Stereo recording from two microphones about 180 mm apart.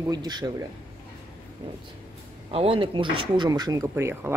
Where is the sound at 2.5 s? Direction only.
30° right (ahead or behind); by 4.4 s 10° right (ahead or behind).